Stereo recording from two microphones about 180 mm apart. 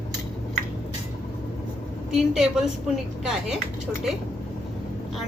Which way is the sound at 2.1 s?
5° right (ahead or behind).